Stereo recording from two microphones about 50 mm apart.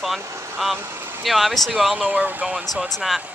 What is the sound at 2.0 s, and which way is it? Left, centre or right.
Speech, right.